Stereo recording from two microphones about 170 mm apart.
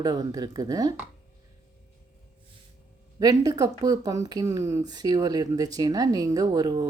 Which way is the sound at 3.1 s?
20° right (ahead or behind).